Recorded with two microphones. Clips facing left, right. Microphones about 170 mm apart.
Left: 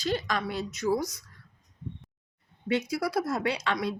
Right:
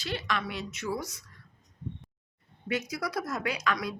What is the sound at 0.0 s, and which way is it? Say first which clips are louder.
A woman's voice: left 4 dB; 40° left (ahead or behind).